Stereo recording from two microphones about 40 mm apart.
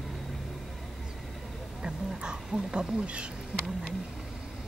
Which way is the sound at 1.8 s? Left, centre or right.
Right.